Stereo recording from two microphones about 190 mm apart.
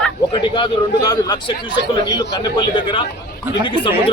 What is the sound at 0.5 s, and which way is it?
Speech, 25° left (ahead or behind).